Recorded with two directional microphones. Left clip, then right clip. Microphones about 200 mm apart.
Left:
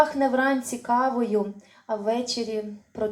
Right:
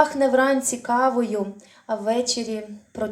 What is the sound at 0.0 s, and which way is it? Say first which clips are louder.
A woman's voice: right 3 dB; 40° right (ahead or behind).